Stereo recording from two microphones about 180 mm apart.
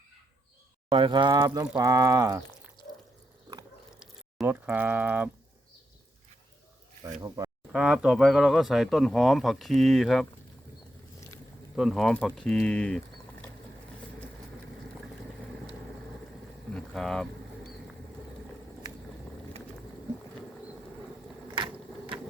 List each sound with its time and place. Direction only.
0.9 s speech: 25° right (ahead or behind)
4.0 s speech: 5° right (ahead or behind)
7.0 s speech: 20° right (ahead or behind)
7.7 s speech: 5° right (ahead or behind)
11.8 s speech: centre (ahead or behind)
16.7 s a sound: 5° left (ahead or behind)
21.4 s vehicle: 25° right (ahead or behind)